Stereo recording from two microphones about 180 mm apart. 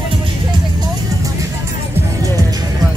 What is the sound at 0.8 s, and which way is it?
Music, 20° right (ahead or behind).